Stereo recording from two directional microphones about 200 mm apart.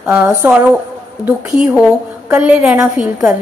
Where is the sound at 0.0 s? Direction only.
10° right (ahead or behind).